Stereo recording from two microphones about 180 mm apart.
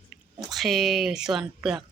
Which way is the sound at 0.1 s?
Centre (ahead or behind).